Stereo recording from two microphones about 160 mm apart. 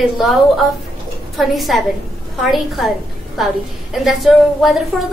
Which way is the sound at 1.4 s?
Centre (ahead or behind).